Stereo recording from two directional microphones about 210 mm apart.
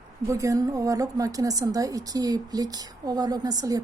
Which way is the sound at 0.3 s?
15° right (ahead or behind).